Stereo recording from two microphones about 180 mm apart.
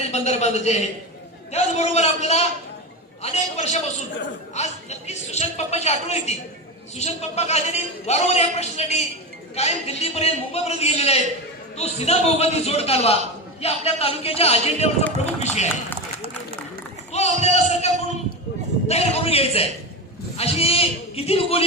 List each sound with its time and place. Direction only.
0.1 s a man's voice: 40° left (ahead or behind)
17.1 s a sound: 35° left (ahead or behind)
17.4 s a man's voice: 40° left (ahead or behind)